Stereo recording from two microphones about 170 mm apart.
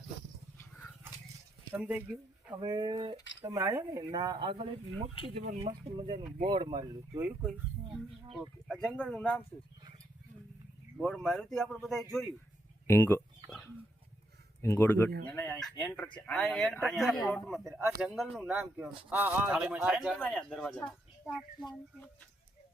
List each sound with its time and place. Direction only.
0.6 s a sound: 10° left (ahead or behind)
1.7 s speech: 10° right (ahead or behind)
2.6 s speech: 25° right (ahead or behind)
3.4 s speech: 15° right (ahead or behind)
7.2 s speech: 10° right (ahead or behind)
7.9 s speech: centre (ahead or behind)
10.9 s speech: 5° left (ahead or behind)
12.9 s speech: 15° left (ahead or behind)
13.5 s a sound: 10° left (ahead or behind)
14.6 s speech: 15° left (ahead or behind)
17.6 s speech: 15° right (ahead or behind)
18.0 s speech: 5° right (ahead or behind)